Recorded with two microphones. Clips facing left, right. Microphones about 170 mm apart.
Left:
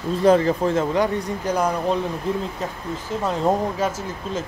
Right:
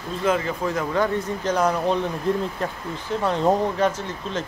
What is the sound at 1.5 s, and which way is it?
Speech, 10° left (ahead or behind).